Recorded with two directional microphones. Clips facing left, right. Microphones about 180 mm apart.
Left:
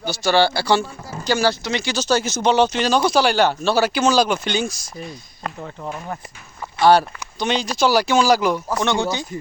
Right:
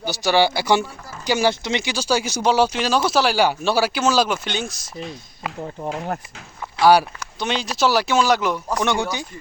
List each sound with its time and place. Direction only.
0.0 s speech: 15° right (ahead or behind)
1.9 s speech: 10° right (ahead or behind)
6.7 s speech: 5° right (ahead or behind)
8.9 s speech: 20° left (ahead or behind)